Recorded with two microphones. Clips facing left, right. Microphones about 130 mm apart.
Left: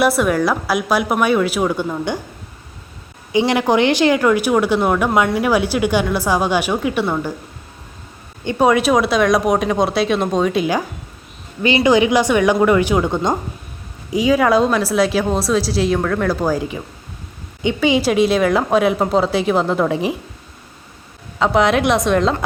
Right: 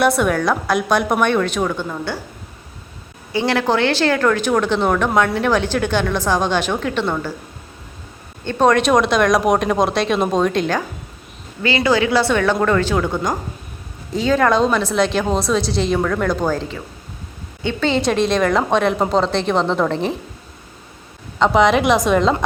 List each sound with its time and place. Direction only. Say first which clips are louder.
0.0 s a woman's voice: left 1 dB; centre (ahead or behind)
3.3 s speech: left 3 dB; 15° left (ahead or behind)
8.4 s a woman's voice: even; 10° left (ahead or behind)
11.6 s a woman's voice: left 3 dB; 20° left (ahead or behind)
21.3 s a woman's voice: right 1 dB; centre (ahead or behind)